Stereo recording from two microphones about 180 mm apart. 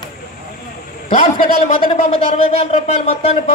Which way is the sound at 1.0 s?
45° left (ahead or behind).